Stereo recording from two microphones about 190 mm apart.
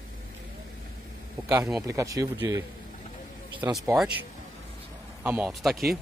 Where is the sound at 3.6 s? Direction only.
15° right (ahead or behind).